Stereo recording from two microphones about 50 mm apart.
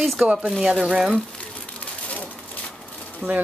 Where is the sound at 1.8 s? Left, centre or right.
Left.